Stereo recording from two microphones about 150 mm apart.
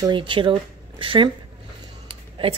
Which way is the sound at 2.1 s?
35° right (ahead or behind).